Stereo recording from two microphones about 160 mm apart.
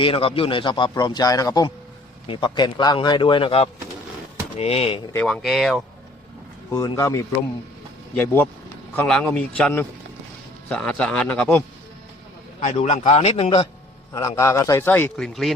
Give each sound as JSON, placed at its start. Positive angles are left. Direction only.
{"t": 0.0, "sound": "a man's voice", "side_deg": 35}
{"t": 5.1, "sound": "speech", "side_deg": 5}
{"t": 6.7, "sound": "a man's voice", "side_deg": 20}
{"t": 12.5, "sound": "a man's voice", "side_deg": 40}
{"t": 14.1, "sound": "a man's voice", "side_deg": 20}